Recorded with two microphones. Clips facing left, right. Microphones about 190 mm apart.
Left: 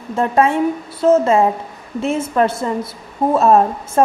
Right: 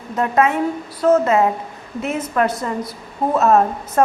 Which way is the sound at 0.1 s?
30° left (ahead or behind).